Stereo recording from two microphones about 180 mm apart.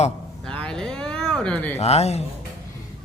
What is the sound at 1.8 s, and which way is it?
Mantra, 35° left (ahead or behind).